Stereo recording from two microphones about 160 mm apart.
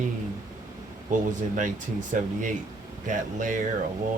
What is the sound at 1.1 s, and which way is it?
Speech, 50° right (ahead or behind).